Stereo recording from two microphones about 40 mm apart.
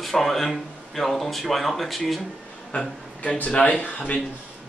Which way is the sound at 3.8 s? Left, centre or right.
Left.